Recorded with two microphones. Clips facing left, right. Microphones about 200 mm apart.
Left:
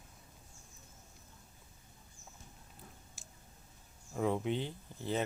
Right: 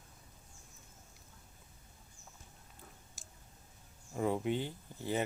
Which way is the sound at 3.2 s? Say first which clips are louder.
Left 1 dB; centre (ahead or behind).